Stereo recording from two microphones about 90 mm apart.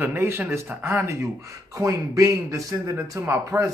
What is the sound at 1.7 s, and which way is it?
A man's voice, 40° right (ahead or behind).